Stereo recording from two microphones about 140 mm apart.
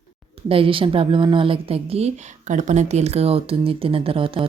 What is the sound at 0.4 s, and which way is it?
Speech, 40° right (ahead or behind).